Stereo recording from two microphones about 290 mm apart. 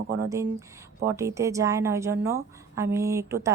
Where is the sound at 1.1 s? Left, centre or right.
Centre.